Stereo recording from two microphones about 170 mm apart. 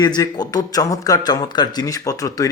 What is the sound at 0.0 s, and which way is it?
Speech, 25° left (ahead or behind).